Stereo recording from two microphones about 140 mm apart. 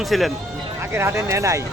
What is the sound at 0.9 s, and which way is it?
Speech, 15° right (ahead or behind).